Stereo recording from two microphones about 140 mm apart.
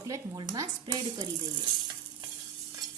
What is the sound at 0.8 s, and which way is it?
Speech, 35° right (ahead or behind).